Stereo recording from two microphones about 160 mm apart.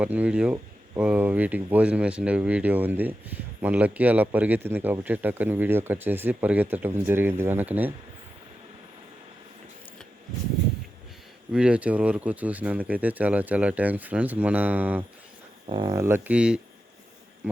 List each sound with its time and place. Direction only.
0.0 s speech: 10° right (ahead or behind)
11.5 s speech: 5° right (ahead or behind)
15.6 s speech: 30° right (ahead or behind)
15.9 s speech: 15° right (ahead or behind)